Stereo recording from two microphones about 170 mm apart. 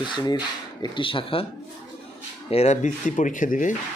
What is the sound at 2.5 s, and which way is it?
Speech, 40° left (ahead or behind).